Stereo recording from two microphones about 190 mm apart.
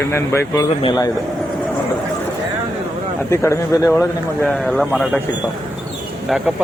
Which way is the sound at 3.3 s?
15° left (ahead or behind).